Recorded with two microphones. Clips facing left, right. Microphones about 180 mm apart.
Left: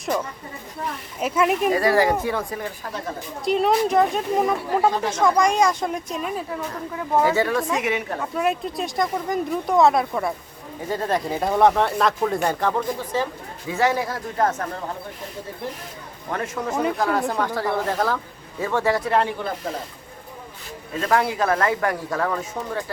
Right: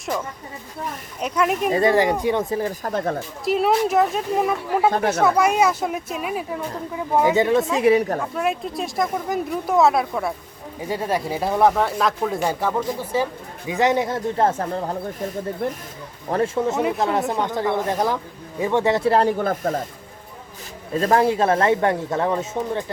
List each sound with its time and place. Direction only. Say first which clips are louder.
1.2 s speech: left 1 dB; 5° left (ahead or behind)
1.7 s speech: right 1 dB; 20° right (ahead or behind)
2.6 s a woman's voice: right 6 dB; 35° right (ahead or behind)
2.9 s speech: right 9 dB; 50° right (ahead or behind)
3.4 s speech: even; 5° right (ahead or behind)
4.9 s speech: right 3 dB; 55° right (ahead or behind)
5.1 s speech: right 1 dB; 5° right (ahead or behind)
7.8 s a woman's voice: right 8 dB; 35° right (ahead or behind)
8.2 s a woman's voice: even; centre (ahead or behind); by 14.9 s 30° right (ahead or behind)
15.6 s speech: right 6 dB; 55° right (ahead or behind)
16.3 s speech: right 5 dB; 30° right (ahead or behind)
19.4 s speech: right 6 dB; 50° right (ahead or behind)
20.9 s speech: right 4 dB; 35° right (ahead or behind)